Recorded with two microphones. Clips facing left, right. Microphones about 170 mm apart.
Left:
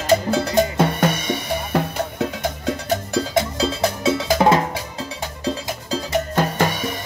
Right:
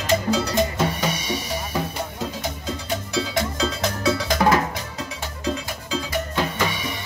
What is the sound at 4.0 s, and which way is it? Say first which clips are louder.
Cowbell: even; 25° left (ahead or behind).